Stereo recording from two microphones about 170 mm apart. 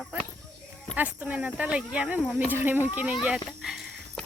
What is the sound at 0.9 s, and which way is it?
Speech, 10° right (ahead or behind).